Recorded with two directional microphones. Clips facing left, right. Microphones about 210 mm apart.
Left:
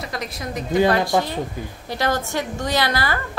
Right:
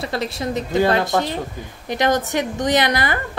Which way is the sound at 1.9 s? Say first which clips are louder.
Right 4 dB; 20° right (ahead or behind).